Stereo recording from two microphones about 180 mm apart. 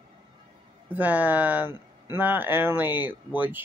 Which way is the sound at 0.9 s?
10° right (ahead or behind).